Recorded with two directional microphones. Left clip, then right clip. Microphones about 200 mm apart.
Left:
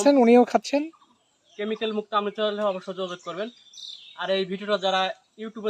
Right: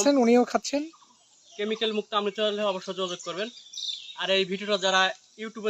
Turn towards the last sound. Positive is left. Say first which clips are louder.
# even
turn(degrees=10)  # may be behind; listen again after turning